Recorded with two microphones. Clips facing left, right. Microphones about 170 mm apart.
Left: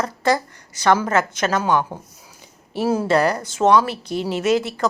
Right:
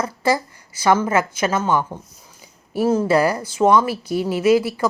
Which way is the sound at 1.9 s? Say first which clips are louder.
Even; 20° left (ahead or behind).